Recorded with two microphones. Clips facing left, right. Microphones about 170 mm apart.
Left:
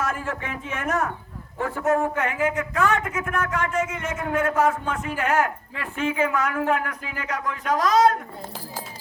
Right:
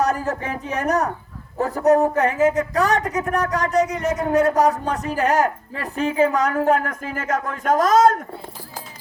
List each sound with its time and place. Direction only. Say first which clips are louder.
0.0 s speech: right 7 dB; 40° right (ahead or behind)